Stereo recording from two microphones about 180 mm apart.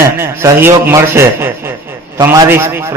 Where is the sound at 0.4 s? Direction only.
15° right (ahead or behind).